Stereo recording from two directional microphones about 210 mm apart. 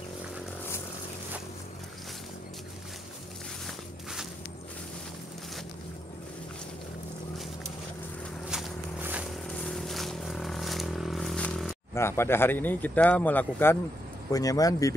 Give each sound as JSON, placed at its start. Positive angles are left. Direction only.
{"t": 3.6, "sound": "walk", "side_deg": 0}
{"t": 8.5, "sound": "walk", "side_deg": -5}
{"t": 9.6, "sound": "a sound", "side_deg": 5}
{"t": 11.9, "sound": "speech", "side_deg": 10}